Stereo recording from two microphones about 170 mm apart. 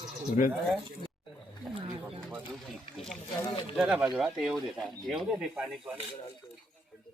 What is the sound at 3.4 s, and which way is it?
Speech, 30° left (ahead or behind).